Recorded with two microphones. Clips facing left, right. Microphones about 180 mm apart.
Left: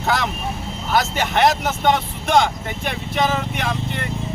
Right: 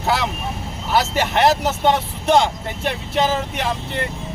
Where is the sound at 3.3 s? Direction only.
35° right (ahead or behind).